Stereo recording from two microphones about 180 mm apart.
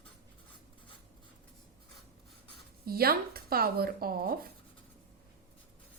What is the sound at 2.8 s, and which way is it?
Speech, 55° right (ahead or behind).